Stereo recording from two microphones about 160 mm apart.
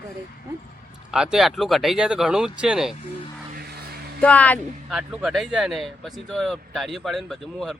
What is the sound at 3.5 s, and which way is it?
Vehicle, 80° right.